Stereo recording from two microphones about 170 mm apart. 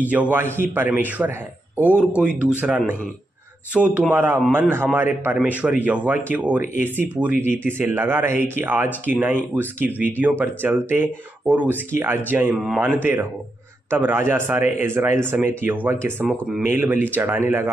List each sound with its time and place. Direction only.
0.1 s speech: 10° right (ahead or behind)